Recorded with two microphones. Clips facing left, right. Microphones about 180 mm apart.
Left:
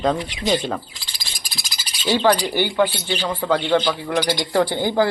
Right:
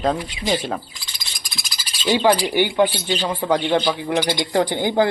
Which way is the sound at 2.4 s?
15° right (ahead or behind).